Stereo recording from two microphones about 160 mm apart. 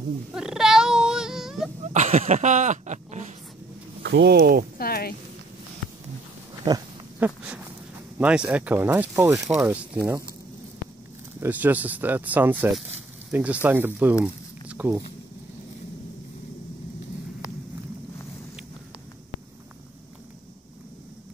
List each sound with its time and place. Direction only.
0.3 s a sound: 5° right (ahead or behind)
1.9 s speech: 45° right (ahead or behind)
4.0 s speech: 90° right; by 4.6 s 65° right (ahead or behind)
4.7 s speech: 70° left (ahead or behind)
7.2 s a sound: 10° right (ahead or behind)
8.2 s speech: 5° right (ahead or behind)
11.4 s speech: 10° right (ahead or behind)